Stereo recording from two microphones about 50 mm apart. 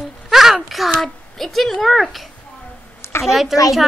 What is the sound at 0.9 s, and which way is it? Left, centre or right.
A woman's voice, centre.